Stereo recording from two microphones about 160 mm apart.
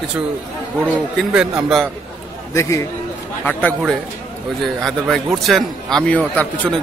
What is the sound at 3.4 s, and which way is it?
A man's voice, 5° left (ahead or behind).